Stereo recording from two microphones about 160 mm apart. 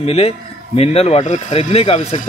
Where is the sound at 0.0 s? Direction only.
40° left (ahead or behind).